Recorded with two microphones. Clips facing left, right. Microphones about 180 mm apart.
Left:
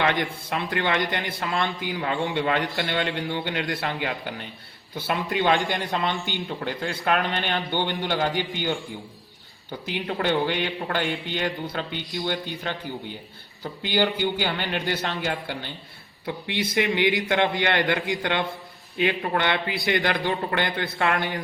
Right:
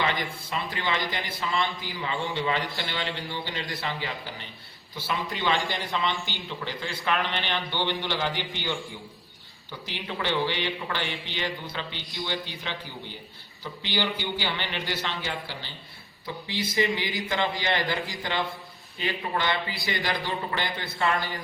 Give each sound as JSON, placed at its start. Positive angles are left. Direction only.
{"t": 0.0, "sound": "a man's voice", "side_deg": 60}
{"t": 9.9, "sound": "a man's voice", "side_deg": 50}
{"t": 13.8, "sound": "a man's voice", "side_deg": 50}